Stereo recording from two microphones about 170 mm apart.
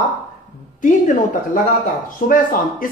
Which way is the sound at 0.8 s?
50° left (ahead or behind).